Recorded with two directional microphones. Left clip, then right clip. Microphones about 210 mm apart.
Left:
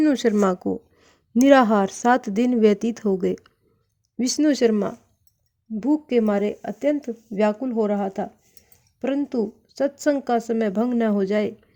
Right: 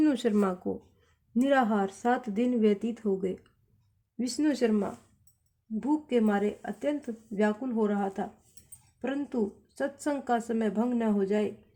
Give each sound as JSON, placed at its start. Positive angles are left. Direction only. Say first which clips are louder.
{"t": 0.0, "sound": "speech", "louder": "left 7 dB", "side_deg": 25}
{"t": 1.3, "sound": "speech", "louder": "left 10 dB", "side_deg": 45}